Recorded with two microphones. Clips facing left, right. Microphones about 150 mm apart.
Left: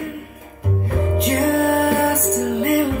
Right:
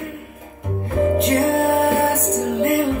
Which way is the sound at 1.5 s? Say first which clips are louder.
Even; 30° right (ahead or behind).